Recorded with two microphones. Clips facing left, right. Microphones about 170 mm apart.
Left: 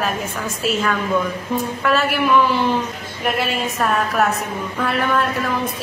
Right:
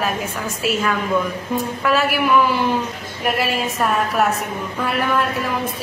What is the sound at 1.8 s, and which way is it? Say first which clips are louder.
A woman's voice: even; 5° right (ahead or behind).